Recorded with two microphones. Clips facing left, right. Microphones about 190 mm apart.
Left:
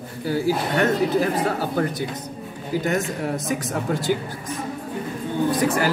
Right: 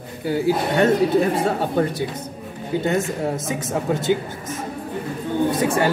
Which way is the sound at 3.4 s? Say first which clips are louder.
Right 2 dB; 25° right (ahead or behind).